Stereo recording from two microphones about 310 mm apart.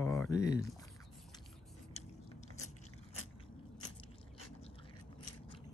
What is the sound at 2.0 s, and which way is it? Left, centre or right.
Biting, left.